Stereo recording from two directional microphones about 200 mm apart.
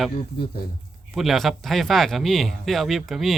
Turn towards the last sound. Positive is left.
turn(degrees=0)  # may be behind; listen again after turning